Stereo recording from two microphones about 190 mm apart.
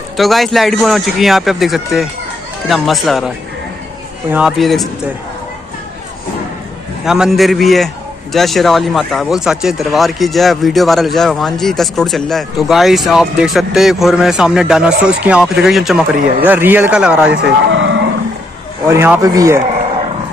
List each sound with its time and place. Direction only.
0.2 s a man's voice: centre (ahead or behind)
4.3 s a man's voice: 5° right (ahead or behind)
7.1 s a man's voice: centre (ahead or behind)
17.3 s speech: 70° right (ahead or behind)
18.9 s speech: 15° right (ahead or behind)